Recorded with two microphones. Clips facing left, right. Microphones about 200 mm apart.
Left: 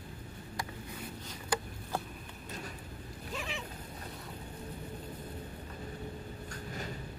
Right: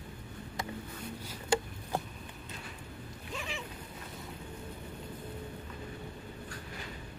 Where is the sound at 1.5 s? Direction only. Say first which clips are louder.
Right 5 dB; 25° right (ahead or behind).